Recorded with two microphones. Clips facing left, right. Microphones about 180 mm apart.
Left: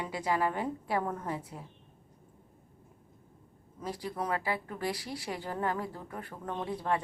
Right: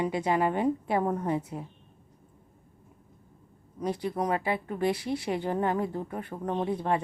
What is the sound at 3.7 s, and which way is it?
A woman's voice, 20° right (ahead or behind).